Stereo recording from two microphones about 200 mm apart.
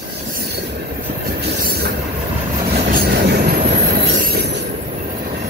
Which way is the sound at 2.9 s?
50° right (ahead or behind).